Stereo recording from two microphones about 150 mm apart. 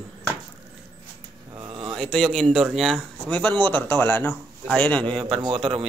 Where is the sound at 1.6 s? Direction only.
35° right (ahead or behind).